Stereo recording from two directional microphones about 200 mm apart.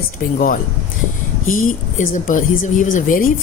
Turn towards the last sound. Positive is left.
turn(degrees=45)  # may be behind; listen again after turning